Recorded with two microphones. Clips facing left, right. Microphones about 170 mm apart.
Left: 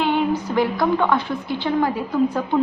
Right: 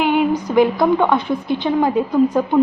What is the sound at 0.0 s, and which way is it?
A woman's voice, 15° right (ahead or behind).